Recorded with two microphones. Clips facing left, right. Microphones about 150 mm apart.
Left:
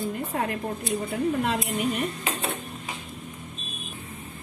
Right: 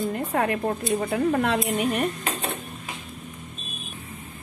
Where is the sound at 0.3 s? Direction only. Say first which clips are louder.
Right 5 dB; 75° right (ahead or behind).